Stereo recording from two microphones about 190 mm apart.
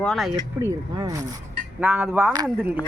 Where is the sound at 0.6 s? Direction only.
15° right (ahead or behind).